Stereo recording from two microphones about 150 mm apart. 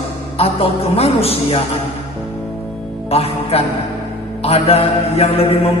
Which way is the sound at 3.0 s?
40° left (ahead or behind).